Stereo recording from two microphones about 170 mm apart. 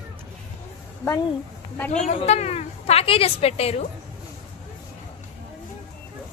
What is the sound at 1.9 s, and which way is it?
A woman's voice, 40° left (ahead or behind).